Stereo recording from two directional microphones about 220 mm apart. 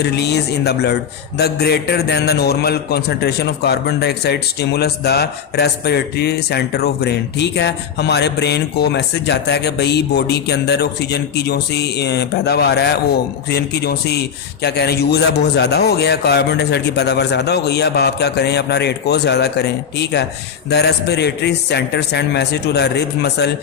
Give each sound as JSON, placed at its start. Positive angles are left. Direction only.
{"t": 0.0, "sound": "a man's voice", "side_deg": 50}